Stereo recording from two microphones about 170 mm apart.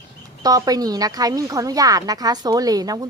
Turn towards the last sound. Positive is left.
turn(degrees=-20)  # may be behind; listen again after turning